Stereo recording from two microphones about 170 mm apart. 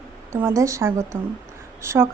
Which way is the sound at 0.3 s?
15° right (ahead or behind).